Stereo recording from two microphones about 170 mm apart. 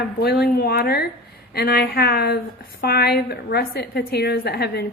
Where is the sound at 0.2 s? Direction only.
70° left (ahead or behind).